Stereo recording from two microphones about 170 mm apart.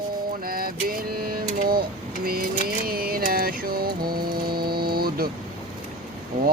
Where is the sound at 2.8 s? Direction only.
60° right (ahead or behind).